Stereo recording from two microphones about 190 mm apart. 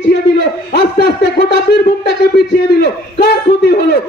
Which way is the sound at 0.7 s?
55° left (ahead or behind).